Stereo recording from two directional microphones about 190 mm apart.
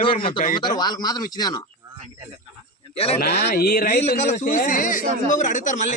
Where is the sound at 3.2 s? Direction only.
60° left (ahead or behind).